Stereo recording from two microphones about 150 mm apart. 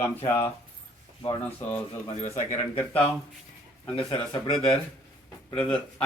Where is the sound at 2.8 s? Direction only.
10° left (ahead or behind).